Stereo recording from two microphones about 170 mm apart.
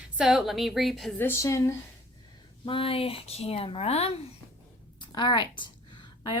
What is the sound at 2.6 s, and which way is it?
Speech, 30° left (ahead or behind).